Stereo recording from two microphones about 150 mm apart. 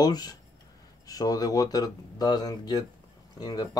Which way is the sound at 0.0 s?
25° left (ahead or behind).